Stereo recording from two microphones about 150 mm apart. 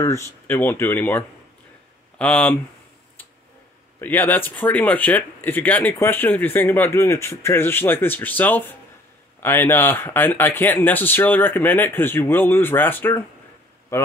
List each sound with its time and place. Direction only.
0.0 s speech: 20° left (ahead or behind)
4.0 s speech: 10° left (ahead or behind)